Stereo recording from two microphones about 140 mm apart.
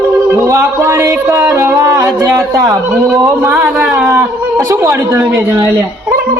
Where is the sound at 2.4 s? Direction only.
20° right (ahead or behind).